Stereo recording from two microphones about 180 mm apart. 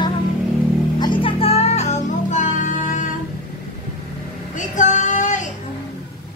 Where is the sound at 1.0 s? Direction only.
30° left (ahead or behind); by 3.1 s 45° left (ahead or behind).